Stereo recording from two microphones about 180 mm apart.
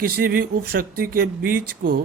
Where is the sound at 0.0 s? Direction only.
55° right (ahead or behind).